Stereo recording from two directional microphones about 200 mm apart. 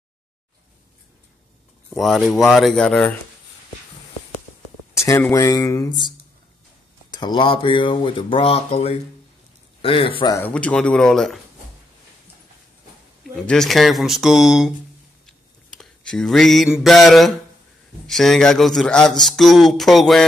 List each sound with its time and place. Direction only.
1.9 s speech: centre (ahead or behind)
4.9 s a sound: 15° left (ahead or behind)
5.3 s speech: 20° left (ahead or behind)
7.1 s a man's voice: 20° left (ahead or behind)
10.3 s speech: 10° left (ahead or behind)
13.4 s speech: centre (ahead or behind)
15.2 s a sound: centre (ahead or behind)
16.8 s speech: centre (ahead or behind)